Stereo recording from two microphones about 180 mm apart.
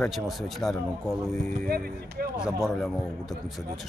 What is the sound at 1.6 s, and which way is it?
Speech, 55° right (ahead or behind).